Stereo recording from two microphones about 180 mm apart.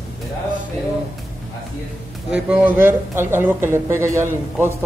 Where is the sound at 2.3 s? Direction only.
10° right (ahead or behind).